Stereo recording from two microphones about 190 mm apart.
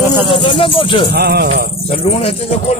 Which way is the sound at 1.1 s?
55° right (ahead or behind).